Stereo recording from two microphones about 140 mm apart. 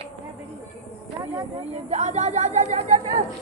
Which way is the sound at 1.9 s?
50° right (ahead or behind).